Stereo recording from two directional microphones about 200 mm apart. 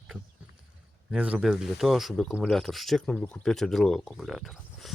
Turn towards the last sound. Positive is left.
turn(degrees=0)  # may be behind; listen again after turning